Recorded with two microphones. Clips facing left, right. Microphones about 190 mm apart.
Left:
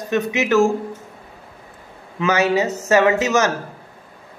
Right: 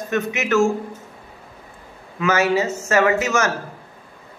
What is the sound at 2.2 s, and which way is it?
A man's voice, 15° left (ahead or behind).